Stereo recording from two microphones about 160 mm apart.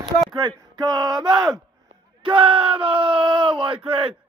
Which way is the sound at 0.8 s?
25° right (ahead or behind).